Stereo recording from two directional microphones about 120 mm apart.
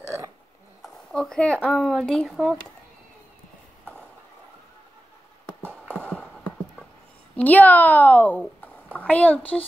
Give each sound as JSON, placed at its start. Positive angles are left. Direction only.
{"t": 0.0, "sound": "burping", "side_deg": -25}
{"t": 0.8, "sound": "speech", "side_deg": 5}
{"t": 5.6, "sound": "a sound", "side_deg": -15}
{"t": 7.3, "sound": "a woman's voice", "side_deg": 15}